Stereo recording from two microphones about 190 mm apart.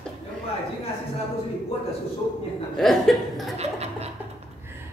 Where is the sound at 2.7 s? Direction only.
Centre (ahead or behind).